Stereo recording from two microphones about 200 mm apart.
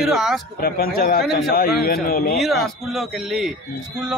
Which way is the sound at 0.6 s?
50° left (ahead or behind).